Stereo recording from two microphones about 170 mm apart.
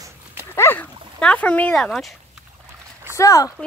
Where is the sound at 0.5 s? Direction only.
10° left (ahead or behind).